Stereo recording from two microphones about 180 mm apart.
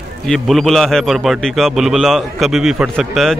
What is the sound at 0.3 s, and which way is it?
A man's voice, centre (ahead or behind).